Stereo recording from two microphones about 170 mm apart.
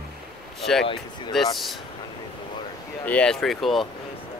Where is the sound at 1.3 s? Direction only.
Centre (ahead or behind).